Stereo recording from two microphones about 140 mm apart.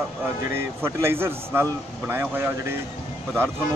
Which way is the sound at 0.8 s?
15° right (ahead or behind).